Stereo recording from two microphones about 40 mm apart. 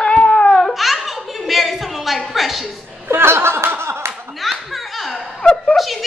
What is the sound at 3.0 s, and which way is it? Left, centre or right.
Laughter, right.